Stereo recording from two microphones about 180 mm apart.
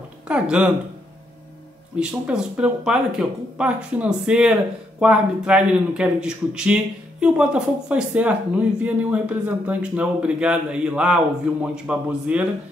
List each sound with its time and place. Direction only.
0.3 s speech: 5° right (ahead or behind)
2.0 s a man's voice: 5° right (ahead or behind)